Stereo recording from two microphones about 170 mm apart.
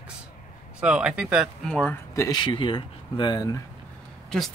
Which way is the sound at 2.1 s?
20° left (ahead or behind).